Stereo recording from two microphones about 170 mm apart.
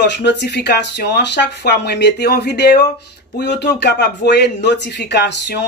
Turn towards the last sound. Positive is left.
turn(degrees=80)